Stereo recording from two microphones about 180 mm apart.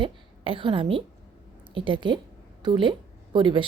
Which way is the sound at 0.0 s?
30° right (ahead or behind).